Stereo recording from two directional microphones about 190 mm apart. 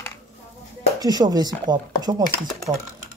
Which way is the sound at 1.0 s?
20° right (ahead or behind).